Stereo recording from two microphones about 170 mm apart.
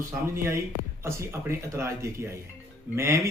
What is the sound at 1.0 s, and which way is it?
A man's voice, 15° right (ahead or behind).